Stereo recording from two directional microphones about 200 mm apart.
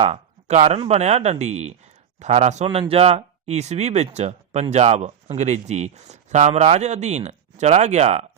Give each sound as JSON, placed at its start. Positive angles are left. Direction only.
{"t": 0.0, "sound": "speech", "side_deg": -30}